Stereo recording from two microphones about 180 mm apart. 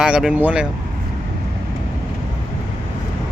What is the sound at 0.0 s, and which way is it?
Speech, 5° right (ahead or behind).